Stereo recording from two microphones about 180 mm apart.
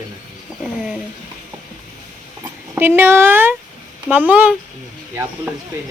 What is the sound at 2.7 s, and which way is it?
Speech, 10° right (ahead or behind).